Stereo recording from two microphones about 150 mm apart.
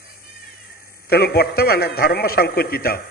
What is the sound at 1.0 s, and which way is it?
A man's voice, 90° left.